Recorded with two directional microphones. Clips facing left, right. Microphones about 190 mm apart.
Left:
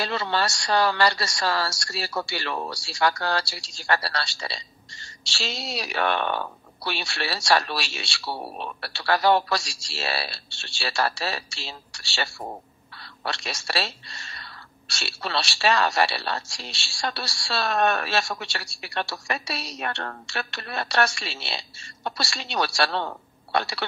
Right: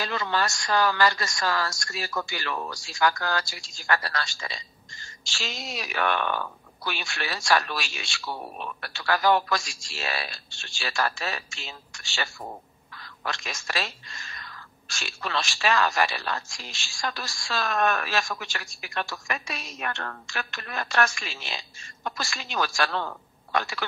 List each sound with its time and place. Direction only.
0.0 s a woman's voice: 35° left (ahead or behind)